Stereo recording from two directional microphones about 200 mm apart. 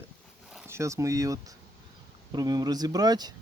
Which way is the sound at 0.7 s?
15° right (ahead or behind).